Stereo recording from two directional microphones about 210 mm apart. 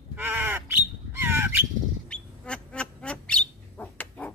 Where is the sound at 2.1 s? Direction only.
5° left (ahead or behind).